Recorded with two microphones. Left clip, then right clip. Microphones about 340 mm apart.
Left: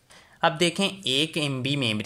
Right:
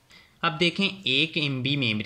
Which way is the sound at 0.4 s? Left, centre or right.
Centre.